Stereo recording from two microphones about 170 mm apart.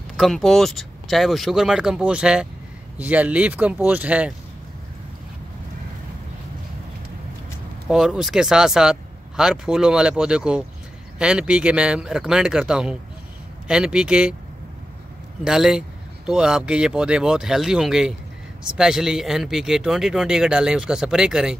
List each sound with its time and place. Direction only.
0.2 s speech: centre (ahead or behind)
7.9 s speech: 5° right (ahead or behind)
15.4 s speech: 5° right (ahead or behind)